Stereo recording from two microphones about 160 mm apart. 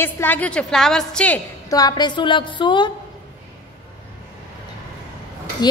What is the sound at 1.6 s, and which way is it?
A woman's voice, 25° left (ahead or behind).